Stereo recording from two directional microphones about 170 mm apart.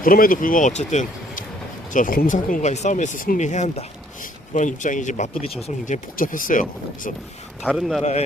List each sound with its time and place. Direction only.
0.0 s speech: 55° left (ahead or behind)
7.8 s speech: centre (ahead or behind)